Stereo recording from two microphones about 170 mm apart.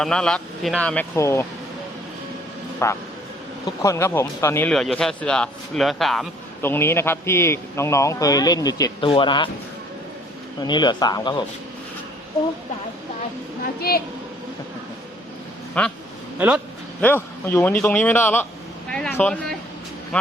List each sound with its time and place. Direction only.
0.0 s a man's voice: 5° left (ahead or behind)
1.1 s a man's voice: 15° left (ahead or behind)
2.8 s a man's voice: 15° left (ahead or behind)
4.7 s a man's voice: centre (ahead or behind)
6.6 s a man's voice: 15° left (ahead or behind); by 9.5 s 30° left (ahead or behind)
10.6 s speech: 25° left (ahead or behind)
15.8 s a man's voice: 10° left (ahead or behind)
16.4 s speech: 10° right (ahead or behind)
17.0 s a man's voice: 10° left (ahead or behind)